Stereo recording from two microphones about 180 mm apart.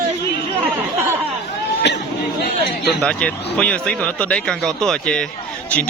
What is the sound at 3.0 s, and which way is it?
Speech, 5° left (ahead or behind).